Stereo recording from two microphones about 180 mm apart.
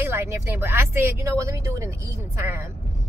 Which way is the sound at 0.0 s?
15° right (ahead or behind).